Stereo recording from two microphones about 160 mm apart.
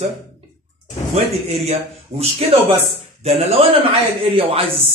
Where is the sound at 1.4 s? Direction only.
40° right (ahead or behind).